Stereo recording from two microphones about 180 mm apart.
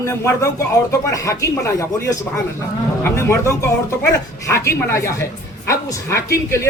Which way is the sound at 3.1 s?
15° left (ahead or behind).